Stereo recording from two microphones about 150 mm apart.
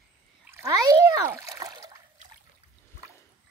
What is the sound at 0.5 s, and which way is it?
Speech, 20° right (ahead or behind).